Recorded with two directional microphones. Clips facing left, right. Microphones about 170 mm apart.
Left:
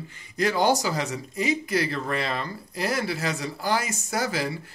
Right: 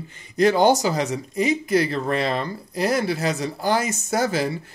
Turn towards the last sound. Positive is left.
turn(degrees=-25)  # may be behind; listen again after turning